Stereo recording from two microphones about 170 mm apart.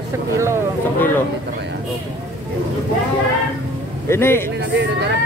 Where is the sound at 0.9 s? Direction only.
10° left (ahead or behind).